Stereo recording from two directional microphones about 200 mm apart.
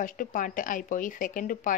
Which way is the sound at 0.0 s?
40° left (ahead or behind).